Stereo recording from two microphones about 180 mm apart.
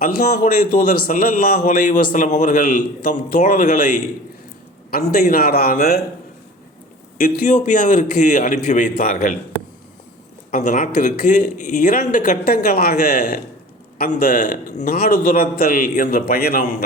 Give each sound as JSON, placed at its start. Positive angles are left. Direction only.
{"t": 0.0, "sound": "a man's voice", "side_deg": 50}
{"t": 7.2, "sound": "a man's voice", "side_deg": 45}
{"t": 10.5, "sound": "a man's voice", "side_deg": 45}